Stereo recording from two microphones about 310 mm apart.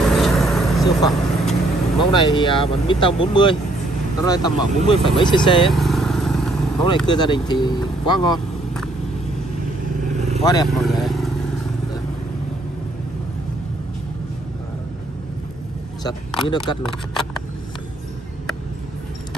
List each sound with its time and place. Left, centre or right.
0.1 s vehicle: centre
2.1 s speech: centre
5.7 s vehicle: centre
7.1 s speech: centre
10.1 s vehicle: right
10.4 s speech: centre
10.7 s vehicle: centre
16.4 s speech: centre